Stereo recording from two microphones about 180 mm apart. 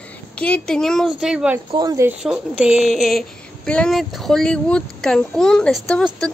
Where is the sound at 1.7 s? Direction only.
20° right (ahead or behind).